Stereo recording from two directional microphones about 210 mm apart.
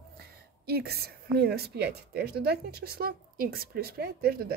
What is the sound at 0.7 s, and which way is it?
A woman's voice, 50° right (ahead or behind).